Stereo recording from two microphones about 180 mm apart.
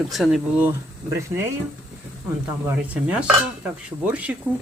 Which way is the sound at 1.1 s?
15° right (ahead or behind).